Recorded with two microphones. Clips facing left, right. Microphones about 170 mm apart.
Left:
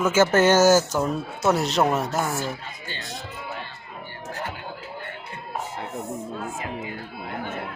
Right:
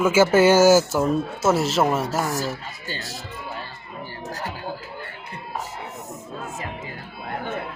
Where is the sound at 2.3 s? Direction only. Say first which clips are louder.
Right 2 dB; 40° right (ahead or behind).